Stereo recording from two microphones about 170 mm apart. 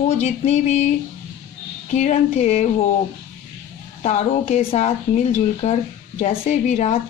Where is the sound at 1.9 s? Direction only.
40° left (ahead or behind).